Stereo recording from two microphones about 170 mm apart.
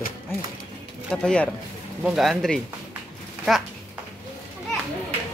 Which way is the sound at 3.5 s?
Centre (ahead or behind).